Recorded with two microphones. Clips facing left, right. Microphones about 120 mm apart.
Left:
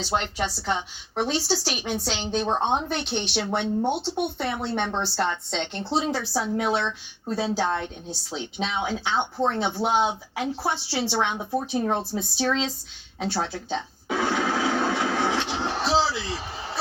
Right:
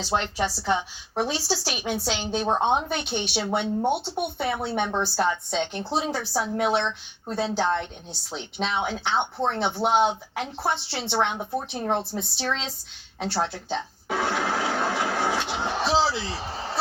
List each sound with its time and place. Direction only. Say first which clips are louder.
0.6 s speech: right 2 dB; 15° right (ahead or behind); by 12.6 s 5° left (ahead or behind)
13.1 s music: even; centre (ahead or behind); by 16.0 s 15° right (ahead or behind)
16.1 s a sound: right 1 dB; 30° right (ahead or behind)